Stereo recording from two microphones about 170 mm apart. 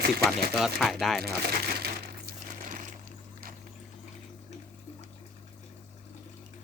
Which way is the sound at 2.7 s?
50° right (ahead or behind).